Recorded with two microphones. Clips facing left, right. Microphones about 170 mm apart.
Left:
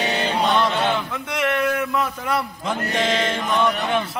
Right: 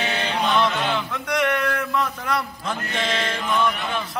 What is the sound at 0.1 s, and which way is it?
Chant, 30° left (ahead or behind).